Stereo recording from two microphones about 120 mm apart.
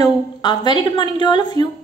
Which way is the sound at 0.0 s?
35° left (ahead or behind).